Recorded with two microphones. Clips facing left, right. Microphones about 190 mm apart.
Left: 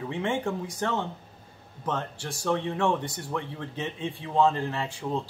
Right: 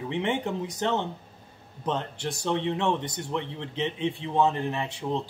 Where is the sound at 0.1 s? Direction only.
20° right (ahead or behind).